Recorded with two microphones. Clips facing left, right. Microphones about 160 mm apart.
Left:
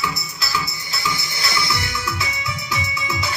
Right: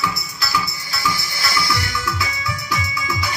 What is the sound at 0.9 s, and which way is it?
Music, 20° left (ahead or behind).